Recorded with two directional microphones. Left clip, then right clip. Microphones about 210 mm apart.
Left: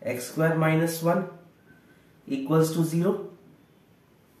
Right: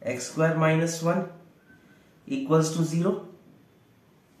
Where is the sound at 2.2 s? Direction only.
10° right (ahead or behind).